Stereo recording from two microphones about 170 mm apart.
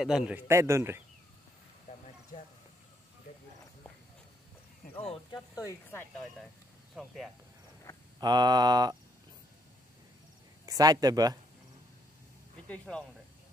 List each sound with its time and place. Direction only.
0.0 s a man's voice: 5° right (ahead or behind)
1.9 s a sound: 45° left (ahead or behind)
4.9 s speech: 35° left (ahead or behind)
5.5 s speech: 20° left (ahead or behind)
8.2 s mantra: 25° right (ahead or behind)
10.6 s speech: 20° right (ahead or behind)
12.6 s speech: 5° left (ahead or behind)